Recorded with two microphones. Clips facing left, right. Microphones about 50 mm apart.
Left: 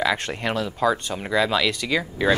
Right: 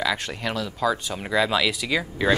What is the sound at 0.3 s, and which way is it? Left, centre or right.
Speech, centre.